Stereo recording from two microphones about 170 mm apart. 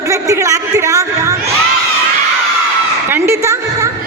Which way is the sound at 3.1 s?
15° right (ahead or behind).